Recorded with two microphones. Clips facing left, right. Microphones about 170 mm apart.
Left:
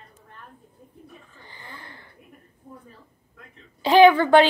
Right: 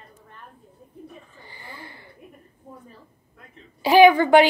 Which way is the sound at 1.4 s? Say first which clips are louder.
Right 1 dB; 10° right (ahead or behind).